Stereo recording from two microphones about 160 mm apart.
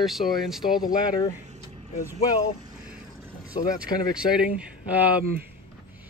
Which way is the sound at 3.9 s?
30° left (ahead or behind).